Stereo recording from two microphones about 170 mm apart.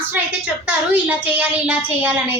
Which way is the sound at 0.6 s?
10° right (ahead or behind).